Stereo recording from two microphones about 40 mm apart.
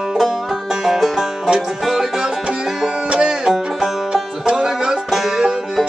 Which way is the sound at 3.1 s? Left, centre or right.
Centre.